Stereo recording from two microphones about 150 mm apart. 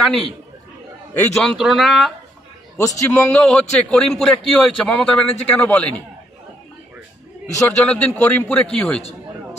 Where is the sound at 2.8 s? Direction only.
20° left (ahead or behind).